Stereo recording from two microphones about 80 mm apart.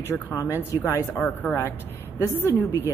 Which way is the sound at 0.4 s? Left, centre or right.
Right.